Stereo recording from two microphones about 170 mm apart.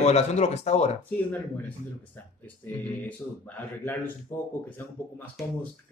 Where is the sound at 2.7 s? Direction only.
10° left (ahead or behind).